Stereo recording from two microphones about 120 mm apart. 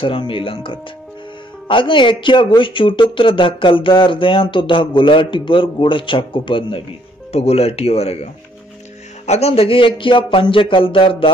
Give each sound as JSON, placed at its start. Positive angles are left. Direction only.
{"t": 0.0, "sound": "speech", "side_deg": 45}
{"t": 7.3, "sound": "speech", "side_deg": 55}